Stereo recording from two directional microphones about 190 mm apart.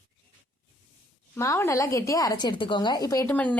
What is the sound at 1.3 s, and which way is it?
A woman's voice, 15° left (ahead or behind).